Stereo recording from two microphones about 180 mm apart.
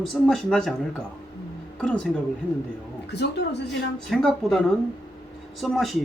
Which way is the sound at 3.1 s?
70° left (ahead or behind).